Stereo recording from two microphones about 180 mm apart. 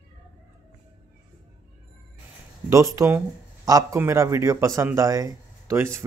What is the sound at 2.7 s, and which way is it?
A man's voice, 15° right (ahead or behind).